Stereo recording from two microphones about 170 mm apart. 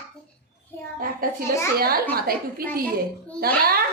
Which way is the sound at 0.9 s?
60° right (ahead or behind).